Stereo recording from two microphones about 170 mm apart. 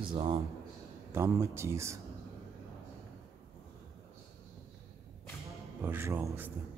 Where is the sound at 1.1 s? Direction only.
15° right (ahead or behind).